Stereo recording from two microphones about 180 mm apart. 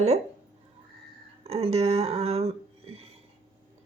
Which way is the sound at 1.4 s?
35° right (ahead or behind).